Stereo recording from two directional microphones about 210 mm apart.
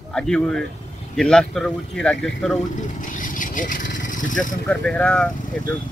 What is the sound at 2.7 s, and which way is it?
Speech, 40° left (ahead or behind).